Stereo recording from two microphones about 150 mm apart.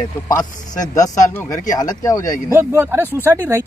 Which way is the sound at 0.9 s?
25° left (ahead or behind).